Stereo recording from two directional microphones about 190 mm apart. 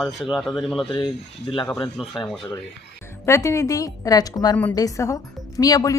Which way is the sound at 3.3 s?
15° left (ahead or behind).